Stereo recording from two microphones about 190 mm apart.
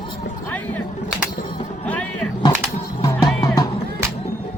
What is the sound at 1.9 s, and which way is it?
Music, 5° left (ahead or behind).